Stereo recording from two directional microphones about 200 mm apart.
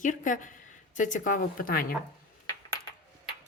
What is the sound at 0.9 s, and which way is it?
Chopping, 40° left (ahead or behind).